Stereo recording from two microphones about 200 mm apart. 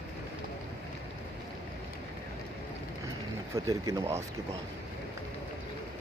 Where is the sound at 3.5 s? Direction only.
15° right (ahead or behind).